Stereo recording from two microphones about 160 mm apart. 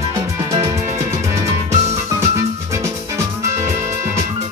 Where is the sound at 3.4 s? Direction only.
20° right (ahead or behind).